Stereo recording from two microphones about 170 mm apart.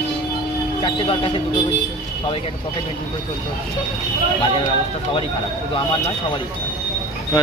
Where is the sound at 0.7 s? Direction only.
30° left (ahead or behind).